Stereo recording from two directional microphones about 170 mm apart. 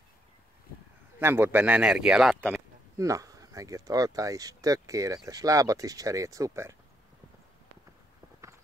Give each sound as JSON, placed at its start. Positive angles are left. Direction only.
{"t": 1.2, "sound": "speech", "side_deg": -15}
{"t": 2.5, "sound": "speech", "side_deg": -20}